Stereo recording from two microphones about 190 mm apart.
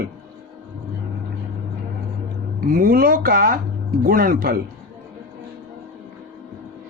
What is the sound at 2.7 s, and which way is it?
A man's voice, 50° right (ahead or behind).